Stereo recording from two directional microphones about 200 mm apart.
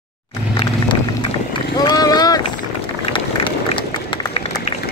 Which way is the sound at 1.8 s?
20° left (ahead or behind).